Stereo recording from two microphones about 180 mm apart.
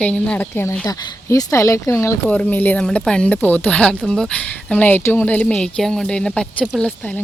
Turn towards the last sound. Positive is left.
turn(degrees=5)  # may be behind; listen again after turning